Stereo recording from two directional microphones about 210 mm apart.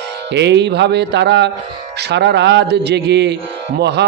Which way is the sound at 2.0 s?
55° right (ahead or behind).